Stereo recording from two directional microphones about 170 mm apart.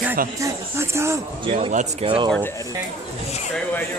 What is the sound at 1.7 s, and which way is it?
Speech, 45° right (ahead or behind).